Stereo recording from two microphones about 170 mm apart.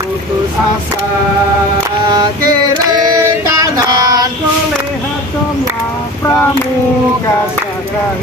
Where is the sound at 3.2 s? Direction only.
20° right (ahead or behind).